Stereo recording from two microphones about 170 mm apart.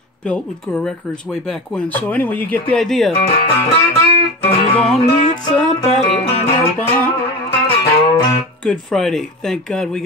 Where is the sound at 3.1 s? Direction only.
35° left (ahead or behind).